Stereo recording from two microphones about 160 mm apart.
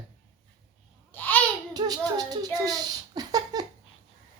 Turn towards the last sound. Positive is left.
turn(degrees=-25)  # may be behind; listen again after turning